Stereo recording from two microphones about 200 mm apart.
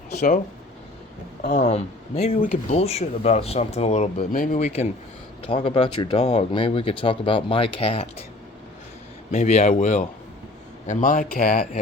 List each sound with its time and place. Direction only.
1.5 s speech: 35° left (ahead or behind)
4.2 s speech: 45° left (ahead or behind); by 8.2 s 30° left (ahead or behind)
9.3 s speech: 35° left (ahead or behind)